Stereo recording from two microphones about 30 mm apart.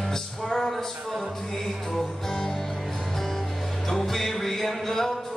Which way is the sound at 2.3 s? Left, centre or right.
Centre.